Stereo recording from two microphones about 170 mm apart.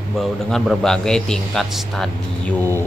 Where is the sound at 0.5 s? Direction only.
5° left (ahead or behind).